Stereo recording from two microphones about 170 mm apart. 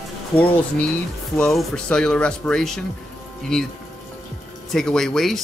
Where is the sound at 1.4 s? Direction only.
5° left (ahead or behind).